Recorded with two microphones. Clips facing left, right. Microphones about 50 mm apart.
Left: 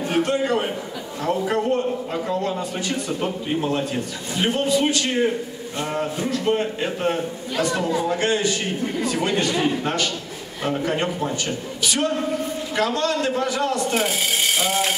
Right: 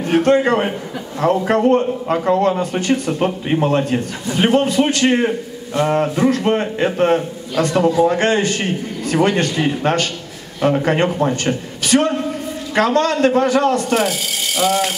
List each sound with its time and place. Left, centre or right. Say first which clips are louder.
0.0 s a man's voice: right 7 dB; right
10.6 s a man's voice: right 7 dB; right